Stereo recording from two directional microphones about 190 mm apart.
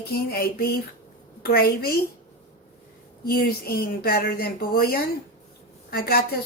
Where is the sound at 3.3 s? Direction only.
55° left (ahead or behind).